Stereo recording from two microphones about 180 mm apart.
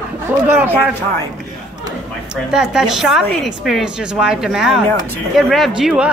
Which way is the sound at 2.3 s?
5° right (ahead or behind).